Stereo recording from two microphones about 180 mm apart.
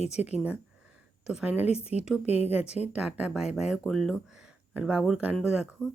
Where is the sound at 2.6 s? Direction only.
35° left (ahead or behind).